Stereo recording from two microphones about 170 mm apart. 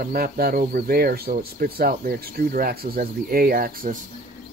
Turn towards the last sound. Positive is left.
turn(degrees=-55)  # may be behind; listen again after turning